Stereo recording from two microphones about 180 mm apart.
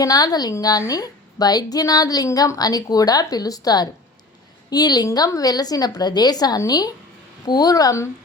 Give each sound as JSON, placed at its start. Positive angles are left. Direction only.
{"t": 0.0, "sound": "a woman's voice", "side_deg": 20}